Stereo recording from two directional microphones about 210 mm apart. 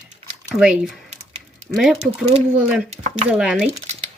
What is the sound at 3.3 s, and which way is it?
Speech, 5° right (ahead or behind).